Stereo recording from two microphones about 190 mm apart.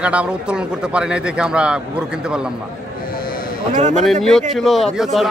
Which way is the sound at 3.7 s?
40° right (ahead or behind).